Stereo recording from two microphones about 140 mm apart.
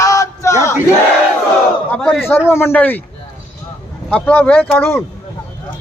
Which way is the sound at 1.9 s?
10° left (ahead or behind).